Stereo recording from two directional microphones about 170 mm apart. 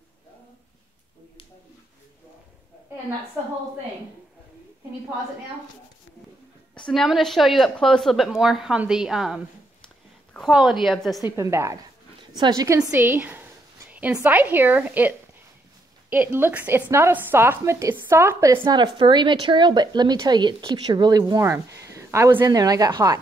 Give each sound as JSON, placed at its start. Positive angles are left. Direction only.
{"t": 6.9, "sound": "a woman's voice", "side_deg": 0}
{"t": 11.2, "sound": "a woman's voice", "side_deg": -15}
{"t": 18.6, "sound": "speech", "side_deg": -25}